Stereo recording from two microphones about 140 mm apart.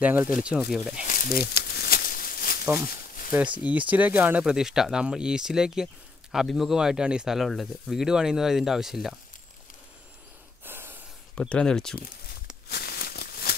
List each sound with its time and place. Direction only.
0.0 s speech: 10° right (ahead or behind)
1.0 s a sound: 85° left
3.6 s speech: 10° right (ahead or behind)
10.6 s snort: 15° right (ahead or behind)
11.3 s speech: 5° left (ahead or behind)
12.6 s a sound: 90° left